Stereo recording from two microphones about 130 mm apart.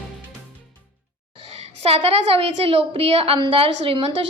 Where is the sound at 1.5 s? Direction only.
55° right (ahead or behind).